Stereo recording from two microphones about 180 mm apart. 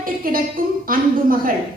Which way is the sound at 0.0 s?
50° right (ahead or behind).